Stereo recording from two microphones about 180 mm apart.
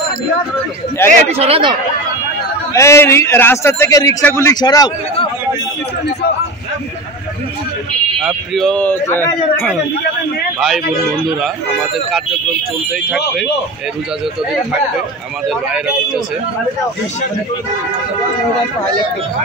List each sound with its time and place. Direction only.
1.0 s a man's voice: 15° left (ahead or behind)
1.3 s speech: 35° right (ahead or behind)
2.7 s a man's voice: 15° left (ahead or behind)
8.2 s a man's voice: centre (ahead or behind)